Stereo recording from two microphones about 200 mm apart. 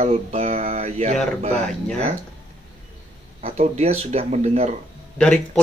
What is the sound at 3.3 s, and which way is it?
Speech, 35° right (ahead or behind).